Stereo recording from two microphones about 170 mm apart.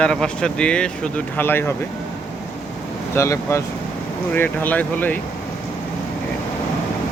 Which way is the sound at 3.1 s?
15° left (ahead or behind).